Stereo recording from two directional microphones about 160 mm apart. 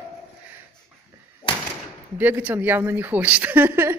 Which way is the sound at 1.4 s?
30° left (ahead or behind).